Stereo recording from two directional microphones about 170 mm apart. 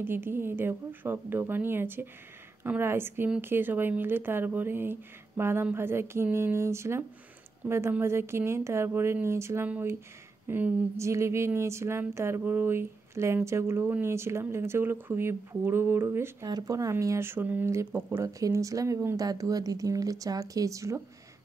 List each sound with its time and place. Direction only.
0.0 s speech: 15° right (ahead or behind)